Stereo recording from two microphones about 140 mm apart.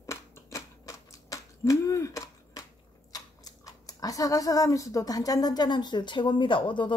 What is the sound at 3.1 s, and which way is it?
Speech, 25° left (ahead or behind).